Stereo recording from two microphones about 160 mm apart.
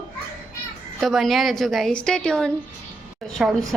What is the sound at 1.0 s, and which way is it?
A woman's voice, centre (ahead or behind).